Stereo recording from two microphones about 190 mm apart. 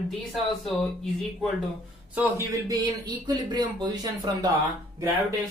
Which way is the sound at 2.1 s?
10° right (ahead or behind).